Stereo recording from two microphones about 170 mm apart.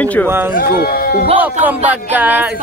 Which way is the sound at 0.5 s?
60° left (ahead or behind).